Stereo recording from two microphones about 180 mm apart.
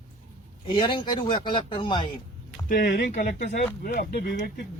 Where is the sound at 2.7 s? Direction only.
55° left (ahead or behind).